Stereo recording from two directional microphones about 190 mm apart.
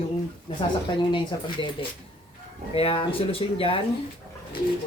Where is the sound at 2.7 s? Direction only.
30° left (ahead or behind).